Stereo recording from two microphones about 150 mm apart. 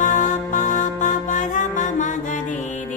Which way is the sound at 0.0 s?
60° left (ahead or behind).